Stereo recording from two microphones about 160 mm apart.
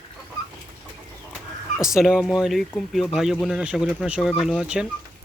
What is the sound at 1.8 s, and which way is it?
Speech, 5° right (ahead or behind).